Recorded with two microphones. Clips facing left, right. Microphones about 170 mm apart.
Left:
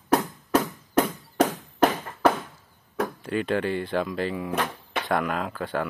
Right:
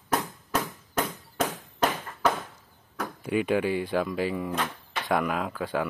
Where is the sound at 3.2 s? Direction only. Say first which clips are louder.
Right 3 dB; 10° right (ahead or behind).